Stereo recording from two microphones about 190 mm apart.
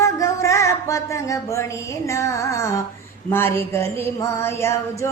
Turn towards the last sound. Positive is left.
turn(degrees=15)  # may be behind; listen again after turning